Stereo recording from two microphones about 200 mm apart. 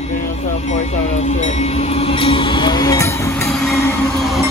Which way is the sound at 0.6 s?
35° left (ahead or behind).